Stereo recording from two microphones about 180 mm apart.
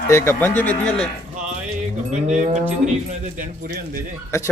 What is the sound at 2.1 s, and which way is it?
Moo, 40° right (ahead or behind).